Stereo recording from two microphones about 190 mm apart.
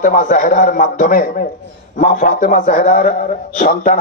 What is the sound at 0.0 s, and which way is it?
A man's voice, 40° left (ahead or behind).